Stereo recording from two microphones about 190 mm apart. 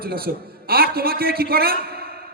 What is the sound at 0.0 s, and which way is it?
A man's voice, 55° right (ahead or behind).